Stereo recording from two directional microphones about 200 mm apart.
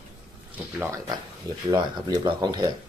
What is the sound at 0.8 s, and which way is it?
Speech, 15° right (ahead or behind).